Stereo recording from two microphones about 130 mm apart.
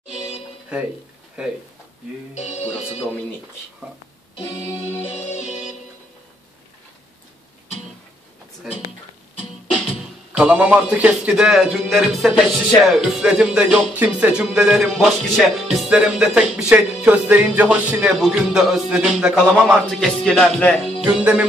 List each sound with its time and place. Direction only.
0.7 s music: 10° right (ahead or behind)
1.4 s a man's voice: 5° right (ahead or behind)
2.3 s music: 60° left (ahead or behind)
5.1 s music: 55° left (ahead or behind)
8.7 s a man's voice: centre (ahead or behind)
10.3 s a man's voice: 10° right (ahead or behind)
21.0 s music: 10° right (ahead or behind)